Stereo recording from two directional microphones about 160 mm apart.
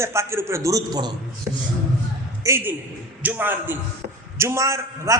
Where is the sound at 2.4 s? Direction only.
15° right (ahead or behind).